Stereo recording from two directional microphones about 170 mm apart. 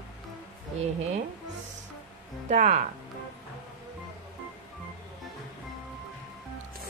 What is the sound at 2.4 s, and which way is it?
Speech, 45° right (ahead or behind).